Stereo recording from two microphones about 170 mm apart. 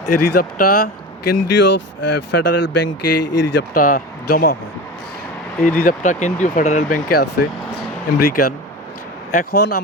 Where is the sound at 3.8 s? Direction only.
55° left (ahead or behind).